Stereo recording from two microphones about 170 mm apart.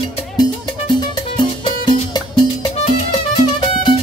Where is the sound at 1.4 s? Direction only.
25° left (ahead or behind).